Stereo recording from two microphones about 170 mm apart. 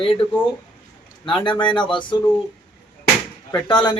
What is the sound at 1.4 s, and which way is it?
Speech, 25° left (ahead or behind).